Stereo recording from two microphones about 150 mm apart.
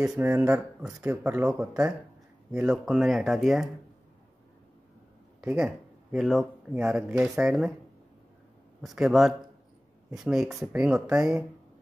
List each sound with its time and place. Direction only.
0.2 s speech: 15° right (ahead or behind)
2.5 s speech: 5° right (ahead or behind)
5.4 s speech: 5° right (ahead or behind)
8.8 s speech: centre (ahead or behind)